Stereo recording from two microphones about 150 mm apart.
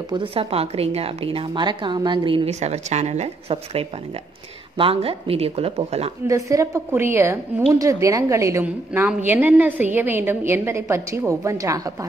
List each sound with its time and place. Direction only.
0.1 s a woman's voice: 35° right (ahead or behind)
6.2 s a woman's voice: 20° right (ahead or behind)